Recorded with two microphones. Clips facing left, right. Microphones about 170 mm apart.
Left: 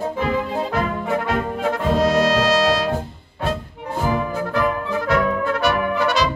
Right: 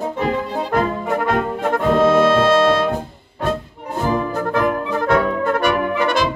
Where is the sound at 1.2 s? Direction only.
55° right (ahead or behind).